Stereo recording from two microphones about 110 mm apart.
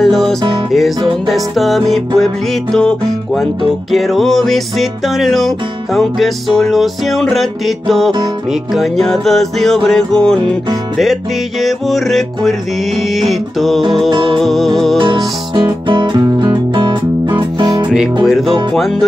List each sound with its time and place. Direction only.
0.0 s music: 5° left (ahead or behind)
11.6 s music: centre (ahead or behind)
15.5 s music: 45° right (ahead or behind)
18.2 s music: centre (ahead or behind)